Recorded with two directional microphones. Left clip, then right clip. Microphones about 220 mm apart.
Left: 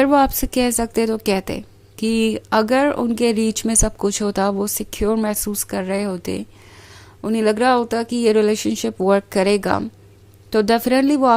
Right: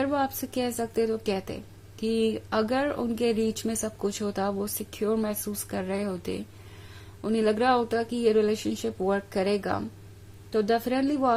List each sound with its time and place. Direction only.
0.0 s a woman's voice: 35° left (ahead or behind)